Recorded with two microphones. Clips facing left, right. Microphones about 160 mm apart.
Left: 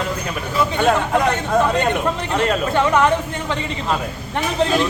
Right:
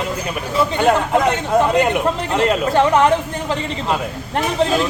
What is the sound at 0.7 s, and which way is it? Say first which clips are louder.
Speech: right 2 dB; 5° right (ahead or behind).